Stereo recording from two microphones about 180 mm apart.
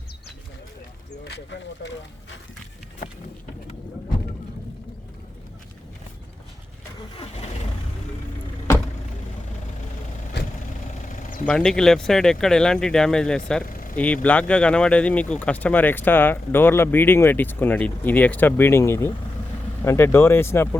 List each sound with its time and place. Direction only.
1.2 s speech: 80° left
11.1 s vehicle: 50° left (ahead or behind)
11.4 s speech: 5° left (ahead or behind)
13.7 s a sound: 50° left (ahead or behind)
13.9 s speech: 10° left (ahead or behind)